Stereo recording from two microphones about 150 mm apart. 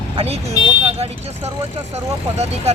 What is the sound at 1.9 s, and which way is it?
Speech, 45° right (ahead or behind).